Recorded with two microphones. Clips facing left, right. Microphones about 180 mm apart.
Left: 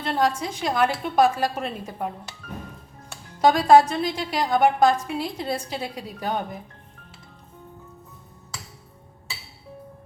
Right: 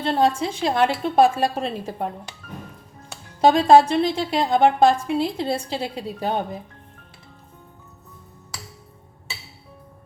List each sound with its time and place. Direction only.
0.0 s a woman's voice: 25° right (ahead or behind)
3.4 s a woman's voice: 25° right (ahead or behind)